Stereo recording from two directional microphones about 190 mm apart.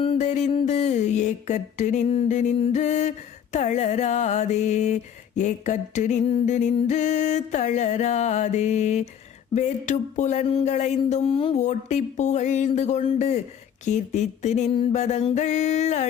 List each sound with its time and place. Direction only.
0.0 s mantra: 35° left (ahead or behind)